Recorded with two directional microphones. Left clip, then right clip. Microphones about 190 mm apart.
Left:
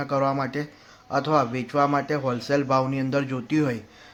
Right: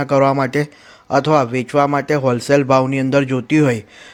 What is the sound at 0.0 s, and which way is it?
A man's voice, 40° right (ahead or behind).